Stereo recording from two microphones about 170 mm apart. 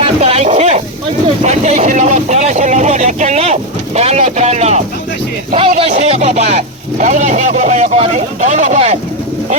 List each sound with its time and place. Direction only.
0.0 s speech: 35° right (ahead or behind)
5.5 s a sound: 35° right (ahead or behind)
5.9 s speech: 40° right (ahead or behind)